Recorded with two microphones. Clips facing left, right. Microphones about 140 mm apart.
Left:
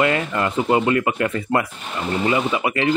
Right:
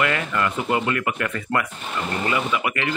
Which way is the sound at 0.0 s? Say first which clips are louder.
Left 3 dB; 25° left (ahead or behind).